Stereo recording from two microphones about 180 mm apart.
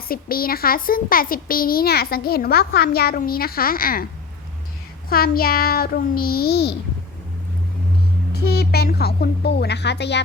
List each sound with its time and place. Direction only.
0.1 s a child's voice: 55° left (ahead or behind)
5.0 s a child's voice: 55° left (ahead or behind)
8.3 s a child's voice: 60° left (ahead or behind)